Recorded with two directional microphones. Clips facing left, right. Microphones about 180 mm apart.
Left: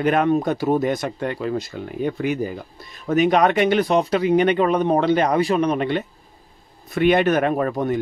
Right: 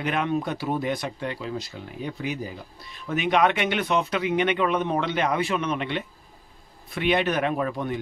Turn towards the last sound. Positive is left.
turn(degrees=45)  # may be behind; listen again after turning